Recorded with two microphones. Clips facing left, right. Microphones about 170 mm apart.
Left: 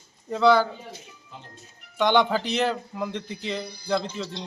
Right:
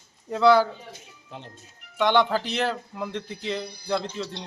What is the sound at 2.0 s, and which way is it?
A man's voice, centre (ahead or behind).